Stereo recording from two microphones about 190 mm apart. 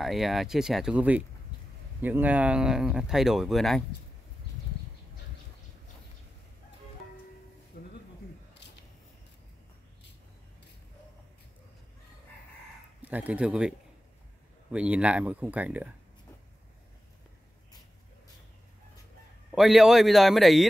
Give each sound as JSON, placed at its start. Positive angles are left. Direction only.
{"t": 0.0, "sound": "speech", "side_deg": 0}
{"t": 7.7, "sound": "music", "side_deg": 55}
{"t": 13.0, "sound": "speech", "side_deg": -10}
{"t": 19.5, "sound": "speech", "side_deg": 0}